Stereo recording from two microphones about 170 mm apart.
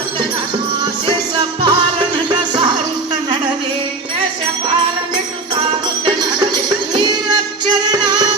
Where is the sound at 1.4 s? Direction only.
25° right (ahead or behind).